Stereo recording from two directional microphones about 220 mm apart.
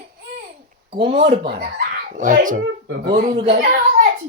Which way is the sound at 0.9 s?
20° right (ahead or behind).